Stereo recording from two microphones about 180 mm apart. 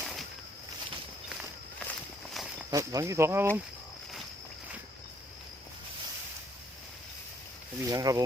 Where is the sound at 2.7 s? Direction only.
20° right (ahead or behind).